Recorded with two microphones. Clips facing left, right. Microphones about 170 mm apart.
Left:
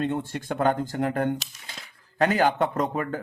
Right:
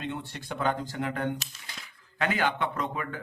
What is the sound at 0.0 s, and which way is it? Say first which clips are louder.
A man's voice: left 8 dB; 50° left (ahead or behind).